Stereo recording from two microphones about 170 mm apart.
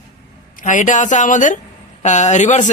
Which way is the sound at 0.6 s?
50° left (ahead or behind).